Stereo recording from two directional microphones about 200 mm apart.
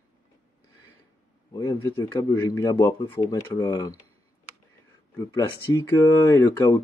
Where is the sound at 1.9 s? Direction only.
20° left (ahead or behind).